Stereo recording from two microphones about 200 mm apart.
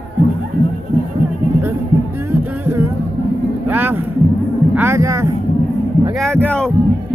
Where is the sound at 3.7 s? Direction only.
10° right (ahead or behind).